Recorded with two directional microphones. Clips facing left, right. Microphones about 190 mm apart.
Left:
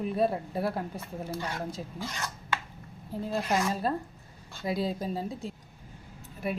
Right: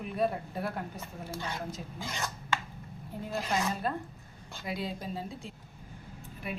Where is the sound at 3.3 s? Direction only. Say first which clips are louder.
Left 3 dB; 35° left (ahead or behind).